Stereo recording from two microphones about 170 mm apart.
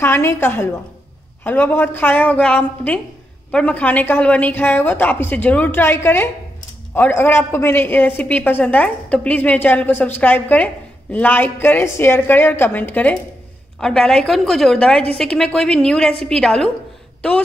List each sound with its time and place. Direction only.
0.0 s a woman's voice: 15° left (ahead or behind)